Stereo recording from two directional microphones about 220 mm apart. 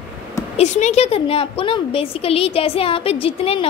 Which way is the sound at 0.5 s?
30° left (ahead or behind).